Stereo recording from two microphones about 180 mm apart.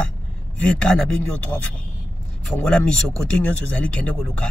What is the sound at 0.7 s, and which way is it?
Speech, 5° left (ahead or behind).